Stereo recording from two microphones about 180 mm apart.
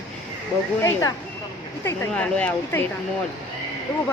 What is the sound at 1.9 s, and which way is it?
Speech, 10° left (ahead or behind).